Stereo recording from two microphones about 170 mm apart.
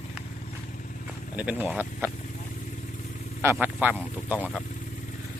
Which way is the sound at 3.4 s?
10° right (ahead or behind).